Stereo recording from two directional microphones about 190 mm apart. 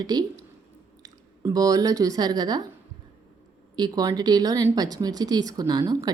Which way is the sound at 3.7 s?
20° right (ahead or behind).